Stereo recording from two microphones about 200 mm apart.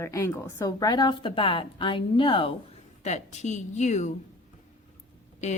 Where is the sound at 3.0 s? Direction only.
35° left (ahead or behind).